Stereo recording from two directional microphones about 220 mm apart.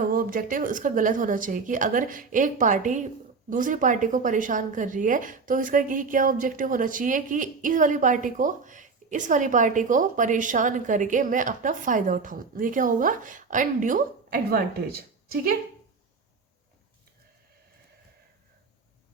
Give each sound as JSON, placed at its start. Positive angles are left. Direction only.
{"t": 0.1, "sound": "a woman's voice", "side_deg": -40}